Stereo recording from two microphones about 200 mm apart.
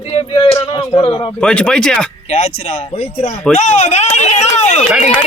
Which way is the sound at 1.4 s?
5° left (ahead or behind).